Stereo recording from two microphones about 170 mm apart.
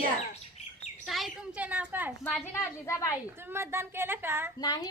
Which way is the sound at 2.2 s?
10° left (ahead or behind).